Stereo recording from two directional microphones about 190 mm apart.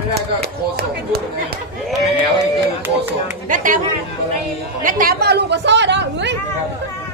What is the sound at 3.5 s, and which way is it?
Speech, 45° right (ahead or behind).